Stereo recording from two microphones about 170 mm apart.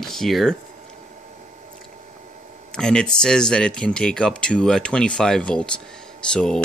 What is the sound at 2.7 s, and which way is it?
Speech, 5° left (ahead or behind).